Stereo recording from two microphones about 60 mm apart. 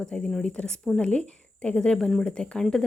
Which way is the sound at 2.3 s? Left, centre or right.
Centre.